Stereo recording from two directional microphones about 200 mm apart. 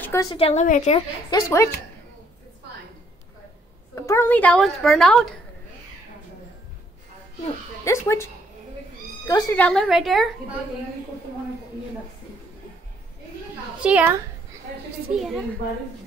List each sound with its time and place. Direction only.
0.0 s a woman's voice: 15° left (ahead or behind)
0.4 s a woman's voice: 35° left (ahead or behind)
1.3 s a woman's voice: 15° left (ahead or behind)
3.9 s a woman's voice: 15° left (ahead or behind)
7.8 s a woman's voice: 15° left (ahead or behind)
9.3 s a woman's voice: 10° left (ahead or behind)
13.8 s a child's voice: 5° right (ahead or behind)
15.1 s a woman's voice: centre (ahead or behind)